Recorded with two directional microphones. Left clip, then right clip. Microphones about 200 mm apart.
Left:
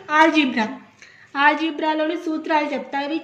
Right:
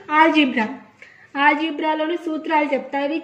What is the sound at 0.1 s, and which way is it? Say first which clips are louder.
A woman's voice: right 1 dB; 40° left (ahead or behind).